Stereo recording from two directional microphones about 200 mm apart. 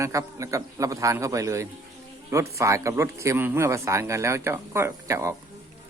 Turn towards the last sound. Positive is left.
turn(degrees=-15)  # may be behind; listen again after turning